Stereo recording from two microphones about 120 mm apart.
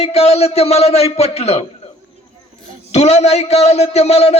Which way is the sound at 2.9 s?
70° left (ahead or behind).